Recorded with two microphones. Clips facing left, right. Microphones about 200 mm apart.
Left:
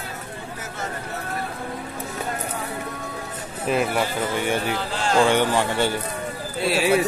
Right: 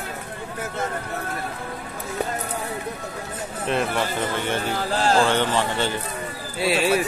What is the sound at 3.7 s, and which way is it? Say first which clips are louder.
Speech: left 2 dB; 5° left (ahead or behind).